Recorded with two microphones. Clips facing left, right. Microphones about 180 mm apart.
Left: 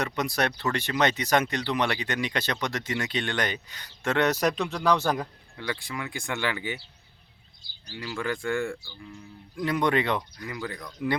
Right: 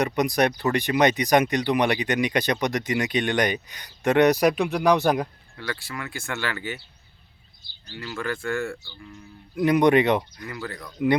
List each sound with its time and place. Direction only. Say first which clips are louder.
0.0 s speech: right 6 dB; 15° right (ahead or behind)
5.5 s speech: even; 15° left (ahead or behind)
7.9 s speech: right 1 dB; 10° left (ahead or behind)
9.6 s speech: right 7 dB; 20° right (ahead or behind)
10.4 s speech: right 1 dB; 15° left (ahead or behind)
10.9 s speech: right 7 dB; 20° right (ahead or behind)